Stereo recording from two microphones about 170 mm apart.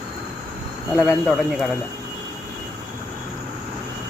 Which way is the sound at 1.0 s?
Centre (ahead or behind).